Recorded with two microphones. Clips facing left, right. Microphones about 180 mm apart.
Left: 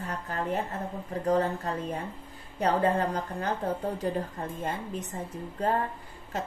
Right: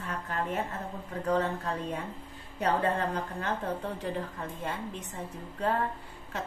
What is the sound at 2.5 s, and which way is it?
Speech, 40° left (ahead or behind).